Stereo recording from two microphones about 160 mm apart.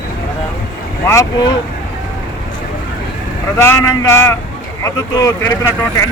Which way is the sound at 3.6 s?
15° left (ahead or behind).